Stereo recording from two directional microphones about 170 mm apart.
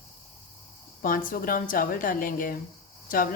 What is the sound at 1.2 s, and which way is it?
Speech, 55° left (ahead or behind).